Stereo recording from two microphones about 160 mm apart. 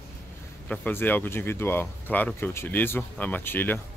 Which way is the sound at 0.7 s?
10° left (ahead or behind).